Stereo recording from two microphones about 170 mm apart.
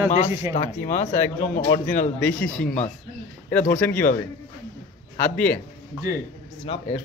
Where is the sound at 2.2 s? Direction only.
5° left (ahead or behind).